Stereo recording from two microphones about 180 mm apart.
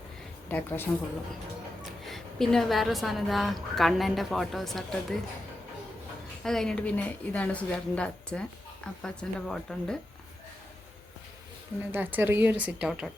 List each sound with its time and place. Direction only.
0.4 s speech: 10° left (ahead or behind)
1.8 s a woman's voice: centre (ahead or behind)
6.4 s a woman's voice: 5° left (ahead or behind)
11.9 s speech: 10° right (ahead or behind)